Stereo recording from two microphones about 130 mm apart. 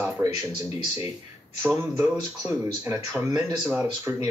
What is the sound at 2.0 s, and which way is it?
Speech, 20° right (ahead or behind).